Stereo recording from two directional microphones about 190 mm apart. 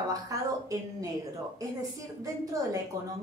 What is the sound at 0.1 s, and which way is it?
A woman's voice, 15° right (ahead or behind).